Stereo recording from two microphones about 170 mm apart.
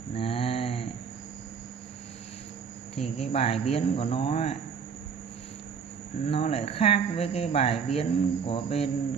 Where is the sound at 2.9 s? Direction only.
35° left (ahead or behind).